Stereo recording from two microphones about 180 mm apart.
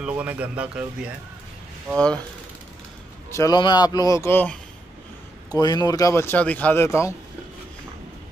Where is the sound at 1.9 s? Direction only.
5° left (ahead or behind).